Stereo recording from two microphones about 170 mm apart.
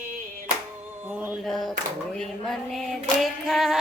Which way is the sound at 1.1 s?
10° right (ahead or behind).